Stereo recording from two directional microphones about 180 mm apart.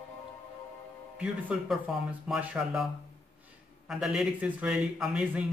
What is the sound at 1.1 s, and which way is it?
Speech, 5° right (ahead or behind).